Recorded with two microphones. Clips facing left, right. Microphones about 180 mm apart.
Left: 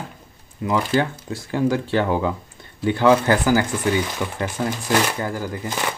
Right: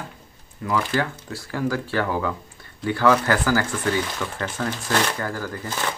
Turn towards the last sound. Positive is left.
turn(degrees=15)  # may be behind; listen again after turning